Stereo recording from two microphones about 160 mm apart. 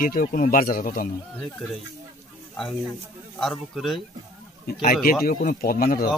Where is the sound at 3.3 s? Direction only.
Centre (ahead or behind).